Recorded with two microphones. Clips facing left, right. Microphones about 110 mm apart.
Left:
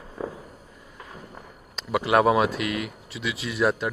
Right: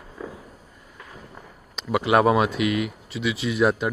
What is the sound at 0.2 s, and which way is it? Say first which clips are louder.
Fireworks: left 4 dB; 30° left (ahead or behind).